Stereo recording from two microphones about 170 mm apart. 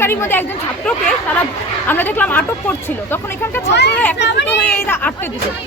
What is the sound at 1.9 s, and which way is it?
Speech, 10° left (ahead or behind).